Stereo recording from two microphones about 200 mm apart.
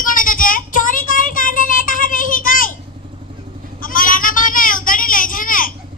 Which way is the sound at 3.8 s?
45° left (ahead or behind).